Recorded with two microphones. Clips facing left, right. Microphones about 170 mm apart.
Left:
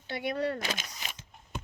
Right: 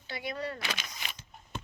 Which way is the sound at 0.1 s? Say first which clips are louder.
Left 5 dB; 60° left (ahead or behind).